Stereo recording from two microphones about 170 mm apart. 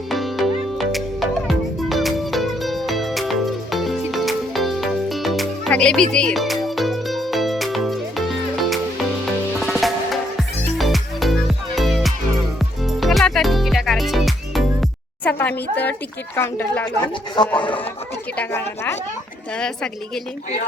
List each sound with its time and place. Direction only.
0.1 s music: centre (ahead or behind)
15.7 s a woman's voice: 10° left (ahead or behind)
17.0 s speech: 25° left (ahead or behind)
18.3 s a woman's voice: 15° left (ahead or behind)